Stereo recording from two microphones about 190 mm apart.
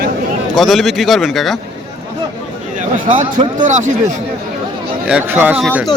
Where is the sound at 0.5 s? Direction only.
Centre (ahead or behind).